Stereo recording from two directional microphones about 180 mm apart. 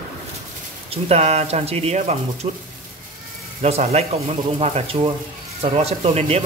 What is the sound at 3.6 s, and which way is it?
Speech, 35° right (ahead or behind).